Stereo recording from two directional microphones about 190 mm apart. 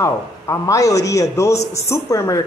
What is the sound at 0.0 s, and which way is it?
A woman's voice, 15° left (ahead or behind).